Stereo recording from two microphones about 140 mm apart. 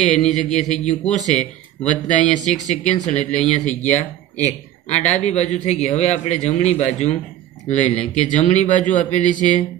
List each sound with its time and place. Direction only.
0.0 s speech: 55° left (ahead or behind)